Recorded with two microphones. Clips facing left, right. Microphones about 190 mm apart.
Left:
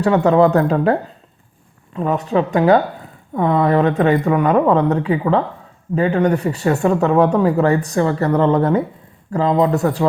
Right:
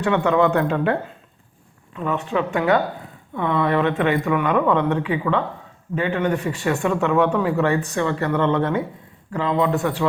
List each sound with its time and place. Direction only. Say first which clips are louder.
0.0 s speech: left 5 dB; 40° left (ahead or behind)